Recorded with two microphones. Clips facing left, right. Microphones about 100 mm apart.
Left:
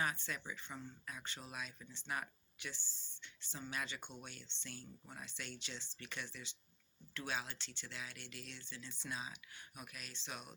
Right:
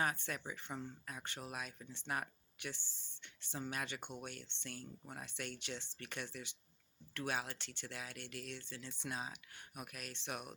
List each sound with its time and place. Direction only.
0.0 s speech: 55° right (ahead or behind)